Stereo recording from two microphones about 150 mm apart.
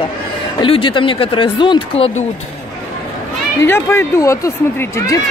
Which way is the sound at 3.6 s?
15° left (ahead or behind).